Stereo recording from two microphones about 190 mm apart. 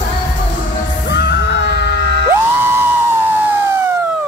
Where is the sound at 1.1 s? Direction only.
65° left (ahead or behind).